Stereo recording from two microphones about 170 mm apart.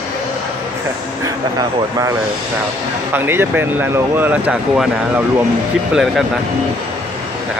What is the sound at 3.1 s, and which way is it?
Speech, 10° right (ahead or behind).